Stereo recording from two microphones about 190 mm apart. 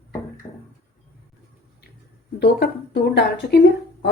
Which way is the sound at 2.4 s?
60° left (ahead or behind).